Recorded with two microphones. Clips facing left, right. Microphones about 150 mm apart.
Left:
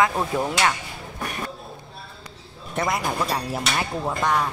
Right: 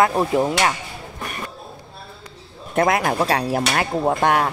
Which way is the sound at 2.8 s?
60° right (ahead or behind).